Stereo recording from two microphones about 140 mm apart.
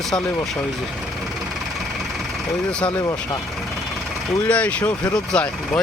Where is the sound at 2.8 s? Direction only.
25° left (ahead or behind).